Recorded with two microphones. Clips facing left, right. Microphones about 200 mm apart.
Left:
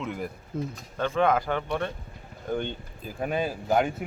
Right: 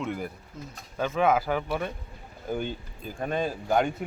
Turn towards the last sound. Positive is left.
turn(degrees=5)  # may be behind; listen again after turning